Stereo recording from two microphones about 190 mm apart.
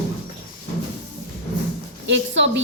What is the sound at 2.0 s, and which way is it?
Speech, 75° right (ahead or behind).